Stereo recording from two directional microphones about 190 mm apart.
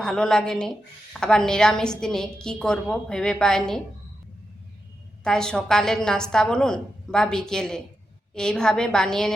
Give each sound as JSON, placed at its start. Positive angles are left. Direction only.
{"t": 0.0, "sound": "a woman's voice", "side_deg": 5}
{"t": 5.2, "sound": "a woman's voice", "side_deg": 5}